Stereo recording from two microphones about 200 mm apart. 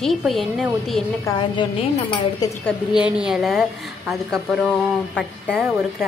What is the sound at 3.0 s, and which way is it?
A woman's voice, 5° right (ahead or behind).